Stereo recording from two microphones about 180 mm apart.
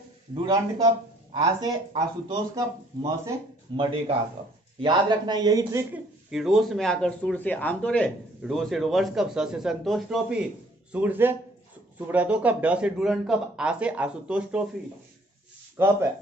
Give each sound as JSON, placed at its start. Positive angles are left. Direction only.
{"t": 0.3, "sound": "speech", "side_deg": -20}
{"t": 3.7, "sound": "speech", "side_deg": -25}
{"t": 6.3, "sound": "a man's voice", "side_deg": 0}
{"t": 15.8, "sound": "speech", "side_deg": -15}